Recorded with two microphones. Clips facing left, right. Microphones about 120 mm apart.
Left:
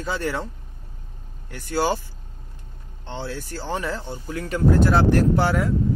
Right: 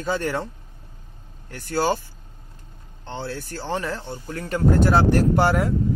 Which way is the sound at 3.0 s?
Centre (ahead or behind).